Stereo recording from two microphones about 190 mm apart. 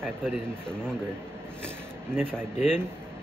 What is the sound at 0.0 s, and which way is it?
Speech, 5° left (ahead or behind).